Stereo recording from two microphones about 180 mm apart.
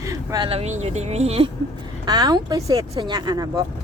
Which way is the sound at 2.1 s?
20° right (ahead or behind).